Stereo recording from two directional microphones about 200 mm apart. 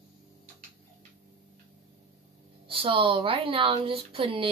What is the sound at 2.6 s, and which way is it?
Speech, 25° right (ahead or behind).